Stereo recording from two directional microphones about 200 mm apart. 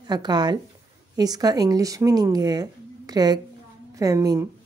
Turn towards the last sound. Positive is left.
turn(degrees=-15)  # may be behind; listen again after turning